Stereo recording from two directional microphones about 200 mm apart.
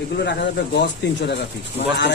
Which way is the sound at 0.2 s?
60° left (ahead or behind).